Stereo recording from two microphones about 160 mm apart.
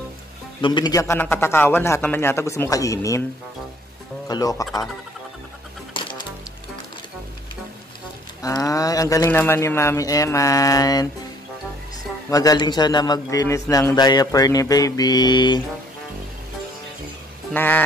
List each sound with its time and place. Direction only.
0.6 s a man's voice: 30° left (ahead or behind)
4.3 s a man's voice: 25° left (ahead or behind)
5.9 s music: 30° left (ahead or behind)
8.4 s a man's voice: 20° left (ahead or behind)
12.3 s a man's voice: 20° left (ahead or behind)
17.6 s a man's voice: 10° left (ahead or behind)